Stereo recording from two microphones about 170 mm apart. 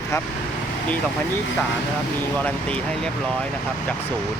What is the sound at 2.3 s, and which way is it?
Speech, 10° left (ahead or behind).